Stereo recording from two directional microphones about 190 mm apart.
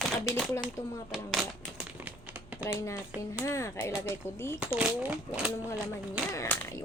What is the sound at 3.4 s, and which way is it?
Speech, 15° left (ahead or behind).